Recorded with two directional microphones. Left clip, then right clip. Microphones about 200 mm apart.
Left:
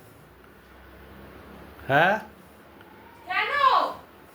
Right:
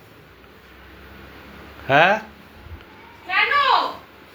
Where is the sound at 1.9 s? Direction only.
10° left (ahead or behind).